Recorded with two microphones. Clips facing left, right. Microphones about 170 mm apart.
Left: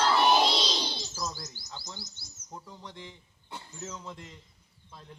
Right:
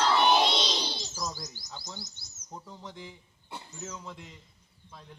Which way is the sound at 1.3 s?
15° right (ahead or behind).